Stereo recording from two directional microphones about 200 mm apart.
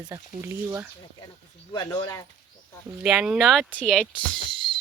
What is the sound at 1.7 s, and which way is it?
Speech, 20° left (ahead or behind).